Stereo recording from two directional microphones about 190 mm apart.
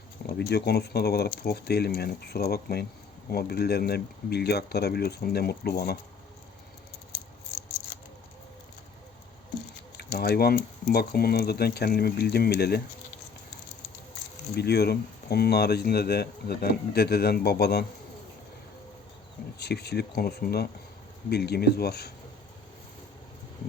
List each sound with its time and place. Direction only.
0.3 s speech: 60° left (ahead or behind)
10.0 s speech: 60° left (ahead or behind)
14.5 s speech: 55° left (ahead or behind)
19.5 s speech: 60° left (ahead or behind)